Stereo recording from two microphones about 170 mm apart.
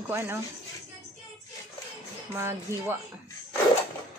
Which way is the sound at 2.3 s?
15° right (ahead or behind).